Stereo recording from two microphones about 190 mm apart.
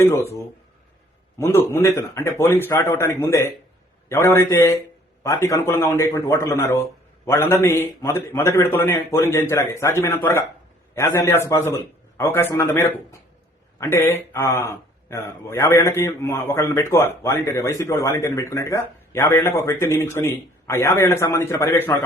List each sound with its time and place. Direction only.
0.0 s a man's voice: 15° left (ahead or behind)